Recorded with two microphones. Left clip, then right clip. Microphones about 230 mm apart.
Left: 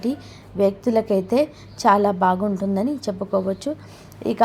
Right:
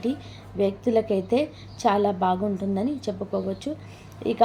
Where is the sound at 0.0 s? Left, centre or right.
Left.